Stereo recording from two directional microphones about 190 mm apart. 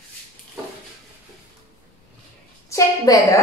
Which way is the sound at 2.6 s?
15° left (ahead or behind).